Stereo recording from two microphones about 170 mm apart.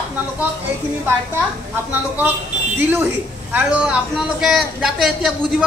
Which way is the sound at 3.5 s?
10° right (ahead or behind).